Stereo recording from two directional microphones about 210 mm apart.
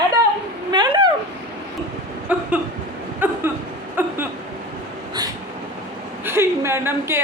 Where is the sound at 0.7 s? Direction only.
20° right (ahead or behind).